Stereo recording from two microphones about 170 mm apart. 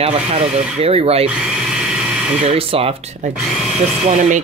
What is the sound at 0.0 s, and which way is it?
Speech, 35° right (ahead or behind).